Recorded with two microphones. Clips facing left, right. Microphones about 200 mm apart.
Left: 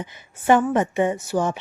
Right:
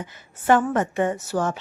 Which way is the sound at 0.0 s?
15° left (ahead or behind).